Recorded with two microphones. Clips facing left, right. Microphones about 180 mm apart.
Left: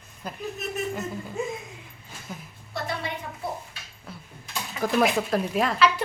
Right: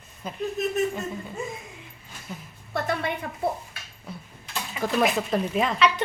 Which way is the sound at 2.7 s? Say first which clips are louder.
Right 4 dB; 55° right (ahead or behind).